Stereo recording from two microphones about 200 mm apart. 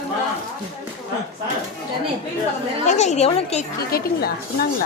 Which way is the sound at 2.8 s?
35° left (ahead or behind).